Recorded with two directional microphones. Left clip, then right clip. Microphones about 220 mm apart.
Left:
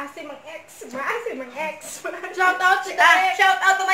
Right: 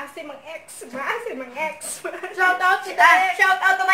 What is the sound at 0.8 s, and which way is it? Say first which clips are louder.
Speech: left 3 dB; 20° right (ahead or behind).